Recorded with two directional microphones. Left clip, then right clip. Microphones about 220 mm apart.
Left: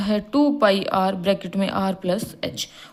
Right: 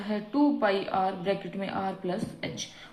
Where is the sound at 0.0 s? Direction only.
55° left (ahead or behind).